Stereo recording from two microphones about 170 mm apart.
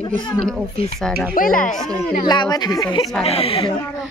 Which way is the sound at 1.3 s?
55° left (ahead or behind).